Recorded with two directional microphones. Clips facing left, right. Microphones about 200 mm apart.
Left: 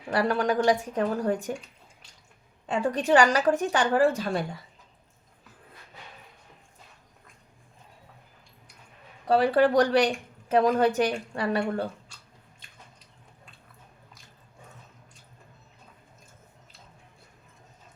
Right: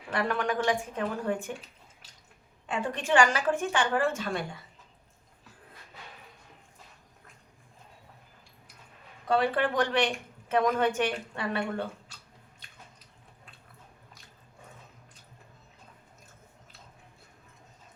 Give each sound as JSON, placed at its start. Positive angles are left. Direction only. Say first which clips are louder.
{"t": 0.1, "sound": "a woman's voice", "louder": "left 5 dB", "side_deg": 35}
{"t": 2.6, "sound": "a woman's voice", "louder": "left 5 dB", "side_deg": 35}
{"t": 9.2, "sound": "a woman's voice", "louder": "left 5 dB", "side_deg": 35}